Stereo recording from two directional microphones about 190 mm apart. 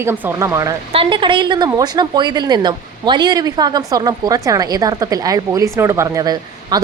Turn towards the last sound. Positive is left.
turn(degrees=-20)  # may be behind; listen again after turning